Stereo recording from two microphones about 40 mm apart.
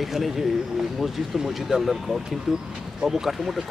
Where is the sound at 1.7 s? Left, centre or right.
Centre.